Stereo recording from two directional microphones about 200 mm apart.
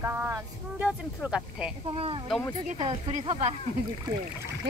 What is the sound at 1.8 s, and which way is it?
Speech, 25° right (ahead or behind).